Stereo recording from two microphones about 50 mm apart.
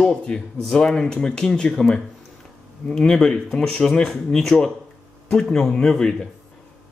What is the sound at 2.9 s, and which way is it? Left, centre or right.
Speech, centre.